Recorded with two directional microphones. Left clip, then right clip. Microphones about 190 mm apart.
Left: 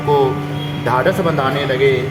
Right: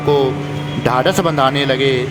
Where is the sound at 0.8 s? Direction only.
50° right (ahead or behind).